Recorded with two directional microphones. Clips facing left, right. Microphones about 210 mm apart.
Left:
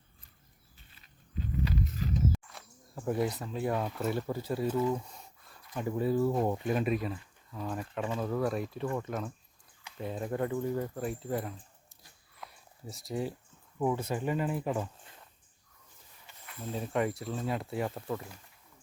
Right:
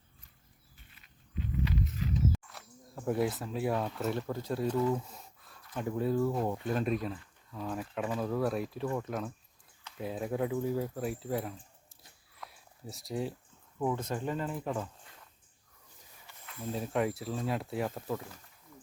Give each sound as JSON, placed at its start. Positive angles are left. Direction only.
{"t": 1.0, "sound": "wild animals", "side_deg": 40}
{"t": 2.5, "sound": "speech", "side_deg": 0}
{"t": 4.9, "sound": "a sound", "side_deg": 0}
{"t": 5.7, "sound": "speech", "side_deg": 5}
{"t": 6.5, "sound": "speech", "side_deg": 15}
{"t": 12.4, "sound": "a sound", "side_deg": 0}
{"t": 13.7, "sound": "speech", "side_deg": 10}
{"t": 16.7, "sound": "speech", "side_deg": 0}